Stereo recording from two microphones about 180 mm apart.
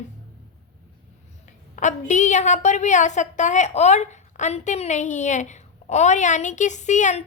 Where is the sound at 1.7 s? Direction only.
40° left (ahead or behind).